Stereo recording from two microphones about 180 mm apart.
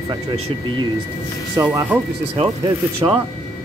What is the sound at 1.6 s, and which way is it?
Speech, 20° right (ahead or behind).